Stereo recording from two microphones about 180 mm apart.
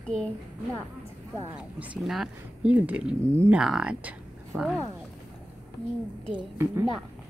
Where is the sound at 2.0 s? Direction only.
Centre (ahead or behind).